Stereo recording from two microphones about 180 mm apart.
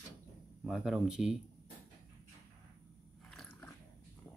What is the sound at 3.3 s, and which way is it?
Dog, 5° left (ahead or behind).